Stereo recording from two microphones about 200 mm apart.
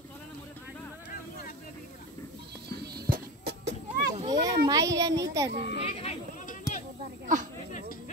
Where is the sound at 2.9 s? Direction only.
50° right (ahead or behind).